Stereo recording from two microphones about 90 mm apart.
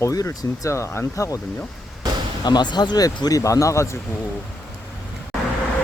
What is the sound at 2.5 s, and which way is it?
Speech, 50° left (ahead or behind).